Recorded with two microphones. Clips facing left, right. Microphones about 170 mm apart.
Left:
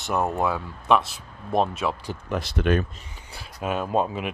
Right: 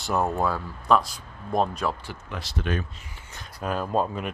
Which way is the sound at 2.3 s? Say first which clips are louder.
Left 7 dB; 55° left (ahead or behind).